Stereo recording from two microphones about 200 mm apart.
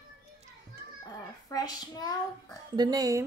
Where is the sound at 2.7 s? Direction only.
20° right (ahead or behind).